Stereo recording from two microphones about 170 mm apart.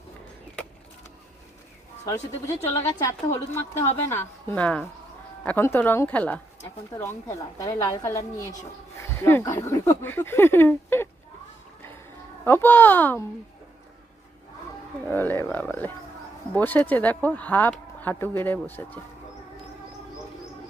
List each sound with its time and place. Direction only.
2.0 s a woman's voice: 15° left (ahead or behind)
12.5 s a woman's voice: 10° left (ahead or behind)
15.1 s a woman's voice: 10° left (ahead or behind)